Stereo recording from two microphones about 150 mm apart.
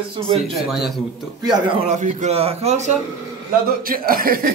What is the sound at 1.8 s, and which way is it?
A man's voice, 50° right (ahead or behind).